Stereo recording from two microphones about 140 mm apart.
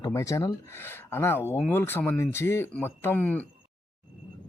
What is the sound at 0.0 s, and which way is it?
Speech, 25° left (ahead or behind).